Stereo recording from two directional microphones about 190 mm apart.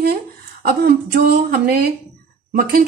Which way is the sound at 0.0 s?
55° right (ahead or behind).